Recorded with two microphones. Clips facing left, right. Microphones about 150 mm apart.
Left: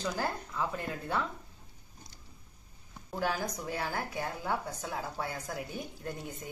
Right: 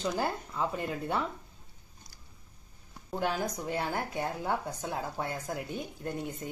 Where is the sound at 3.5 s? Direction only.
15° right (ahead or behind).